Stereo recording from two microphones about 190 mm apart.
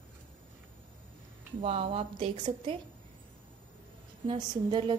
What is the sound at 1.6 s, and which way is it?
A woman's voice, 30° right (ahead or behind).